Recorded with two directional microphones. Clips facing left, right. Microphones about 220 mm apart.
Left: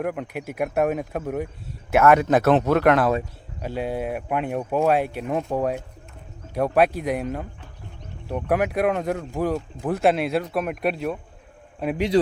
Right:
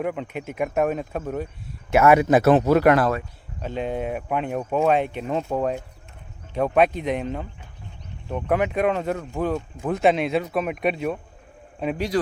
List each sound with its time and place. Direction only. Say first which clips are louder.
0.0 s speech: even; 5° left (ahead or behind)
1.9 s speech: right 1 dB; 5° right (ahead or behind)
3.6 s speech: even; 10° left (ahead or behind)
11.9 s speech: left 5 dB; 20° left (ahead or behind)